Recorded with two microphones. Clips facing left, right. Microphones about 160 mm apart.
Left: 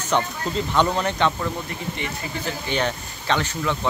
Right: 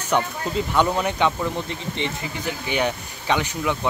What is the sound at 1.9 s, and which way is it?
Speech, 25° right (ahead or behind).